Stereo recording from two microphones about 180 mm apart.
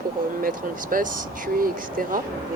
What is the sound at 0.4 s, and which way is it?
Speech, 50° right (ahead or behind).